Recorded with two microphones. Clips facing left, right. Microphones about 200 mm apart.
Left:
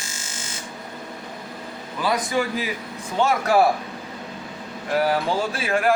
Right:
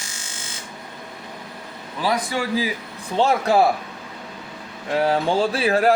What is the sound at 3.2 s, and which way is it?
Speech, 25° right (ahead or behind).